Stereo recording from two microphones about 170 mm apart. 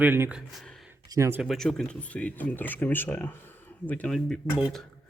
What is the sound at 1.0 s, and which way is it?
Speech, 20° right (ahead or behind).